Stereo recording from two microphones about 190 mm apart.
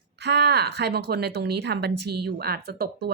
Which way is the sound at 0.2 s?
60° right (ahead or behind).